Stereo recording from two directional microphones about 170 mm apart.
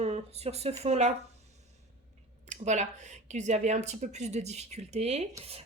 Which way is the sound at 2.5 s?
45° right (ahead or behind).